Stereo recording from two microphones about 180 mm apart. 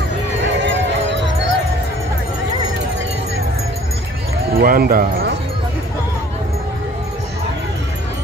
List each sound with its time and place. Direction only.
0.7 s music: 85° right
4.6 s speech: 55° right (ahead or behind)